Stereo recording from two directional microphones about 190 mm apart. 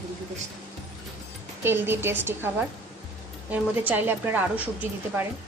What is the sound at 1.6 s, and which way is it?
Speech, 10° right (ahead or behind).